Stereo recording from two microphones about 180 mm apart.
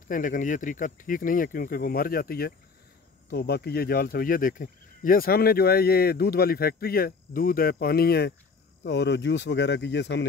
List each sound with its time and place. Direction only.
0.1 s speech: 50° left (ahead or behind); by 8.4 s 65° left (ahead or behind)
8.8 s speech: 75° left (ahead or behind)